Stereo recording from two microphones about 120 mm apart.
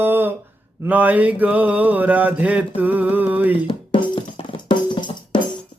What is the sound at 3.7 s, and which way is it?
Music, 45° left (ahead or behind).